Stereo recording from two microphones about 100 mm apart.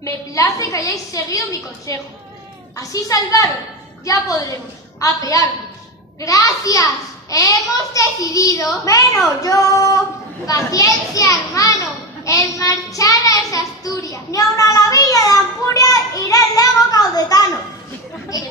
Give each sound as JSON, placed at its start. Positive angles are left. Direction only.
{"t": 0.0, "sound": "a child's voice", "side_deg": 35}
{"t": 2.8, "sound": "a child's voice", "side_deg": 35}
{"t": 10.4, "sound": "a sound", "side_deg": 35}
{"t": 18.3, "sound": "speech", "side_deg": 40}